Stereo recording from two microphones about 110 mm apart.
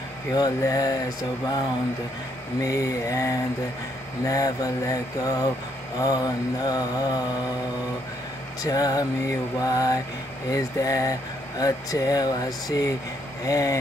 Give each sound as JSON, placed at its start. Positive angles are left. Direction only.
{"t": 0.3, "sound": "speech", "side_deg": 35}
{"t": 2.6, "sound": "speech", "side_deg": 30}
{"t": 8.6, "sound": "speech", "side_deg": 35}